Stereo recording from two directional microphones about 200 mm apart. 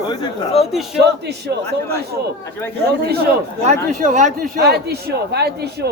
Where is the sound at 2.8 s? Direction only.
50° right (ahead or behind).